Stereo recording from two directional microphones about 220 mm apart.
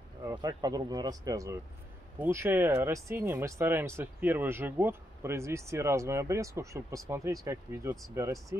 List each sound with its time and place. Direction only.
0.2 s speech: 15° right (ahead or behind)